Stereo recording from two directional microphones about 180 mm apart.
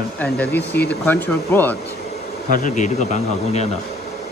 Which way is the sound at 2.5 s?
45° left (ahead or behind).